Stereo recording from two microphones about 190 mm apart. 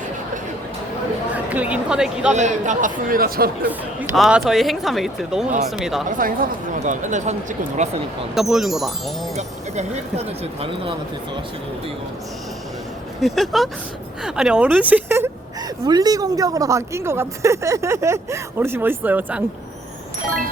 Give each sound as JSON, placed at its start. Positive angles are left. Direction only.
{"t": 1.3, "sound": "a woman's voice", "side_deg": -10}
{"t": 2.3, "sound": "speech", "side_deg": -40}
{"t": 3.7, "sound": "speech", "side_deg": -5}
{"t": 6.1, "sound": "speech", "side_deg": -45}
{"t": 8.4, "sound": "speech", "side_deg": 0}
{"t": 9.3, "sound": "speech", "side_deg": -35}
{"t": 13.2, "sound": "speech", "side_deg": 0}